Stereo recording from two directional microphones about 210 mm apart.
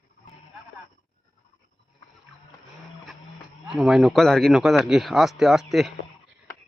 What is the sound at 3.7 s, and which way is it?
Speech, centre (ahead or behind).